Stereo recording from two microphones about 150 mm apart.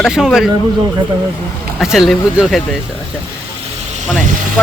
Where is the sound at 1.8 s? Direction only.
Centre (ahead or behind).